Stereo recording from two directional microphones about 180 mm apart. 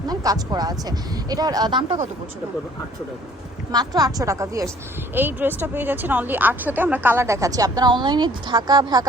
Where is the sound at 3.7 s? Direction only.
20° right (ahead or behind).